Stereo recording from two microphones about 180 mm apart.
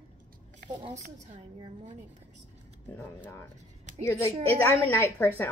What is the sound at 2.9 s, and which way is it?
Speech, 10° left (ahead or behind).